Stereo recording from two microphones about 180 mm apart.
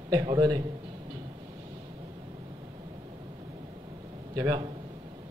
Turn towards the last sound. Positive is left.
turn(degrees=-20)  # may be behind; listen again after turning